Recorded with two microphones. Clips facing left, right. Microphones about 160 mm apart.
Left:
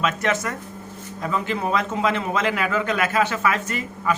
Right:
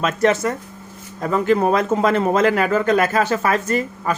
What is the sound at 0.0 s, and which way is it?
Speech, 35° right (ahead or behind).